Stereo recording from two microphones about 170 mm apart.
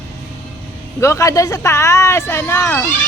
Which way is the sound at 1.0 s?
15° left (ahead or behind).